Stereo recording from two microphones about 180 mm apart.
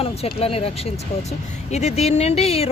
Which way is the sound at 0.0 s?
35° left (ahead or behind).